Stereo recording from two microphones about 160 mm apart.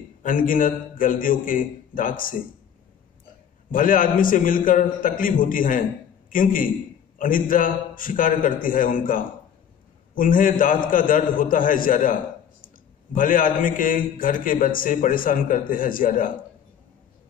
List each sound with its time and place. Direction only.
0.2 s a man's voice: 60° left (ahead or behind)
3.7 s a man's voice: 60° left (ahead or behind)